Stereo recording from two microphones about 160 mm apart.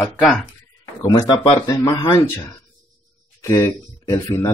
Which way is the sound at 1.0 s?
25° left (ahead or behind).